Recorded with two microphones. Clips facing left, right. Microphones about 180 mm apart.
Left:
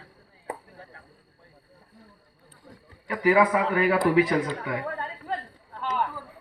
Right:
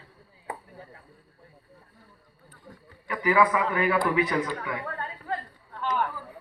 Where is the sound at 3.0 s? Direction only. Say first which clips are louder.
Left 2 dB; 40° left (ahead or behind).